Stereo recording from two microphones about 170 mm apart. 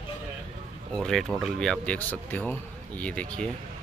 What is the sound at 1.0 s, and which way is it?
Speech, centre (ahead or behind).